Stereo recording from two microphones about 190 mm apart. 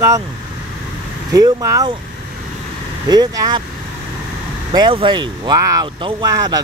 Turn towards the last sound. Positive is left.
turn(degrees=-20)  # may be behind; listen again after turning